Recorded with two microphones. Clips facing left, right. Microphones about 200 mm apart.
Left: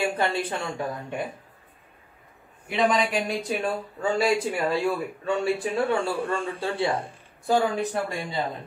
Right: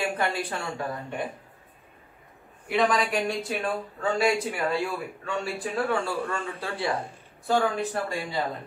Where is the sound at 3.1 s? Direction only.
15° left (ahead or behind).